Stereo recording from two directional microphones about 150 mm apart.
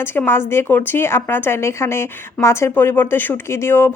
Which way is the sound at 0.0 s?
15° left (ahead or behind).